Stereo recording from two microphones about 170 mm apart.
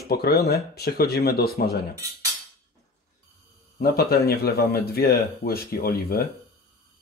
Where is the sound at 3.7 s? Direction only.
65° left (ahead or behind).